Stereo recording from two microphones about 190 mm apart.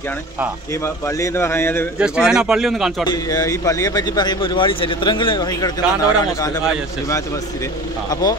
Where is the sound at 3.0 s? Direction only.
20° left (ahead or behind).